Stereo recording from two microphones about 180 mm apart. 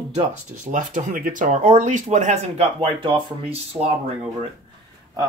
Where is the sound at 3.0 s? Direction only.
30° right (ahead or behind).